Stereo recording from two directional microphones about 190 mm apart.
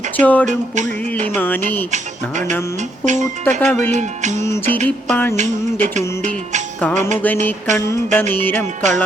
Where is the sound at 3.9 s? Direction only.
40° right (ahead or behind).